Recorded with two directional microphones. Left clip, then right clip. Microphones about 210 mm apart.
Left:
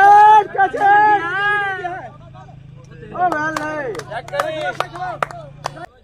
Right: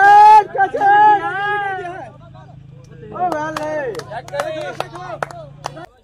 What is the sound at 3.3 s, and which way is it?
Speech, 35° left (ahead or behind).